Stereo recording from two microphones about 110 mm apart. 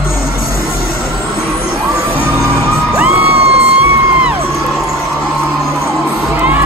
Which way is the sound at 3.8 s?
10° right (ahead or behind).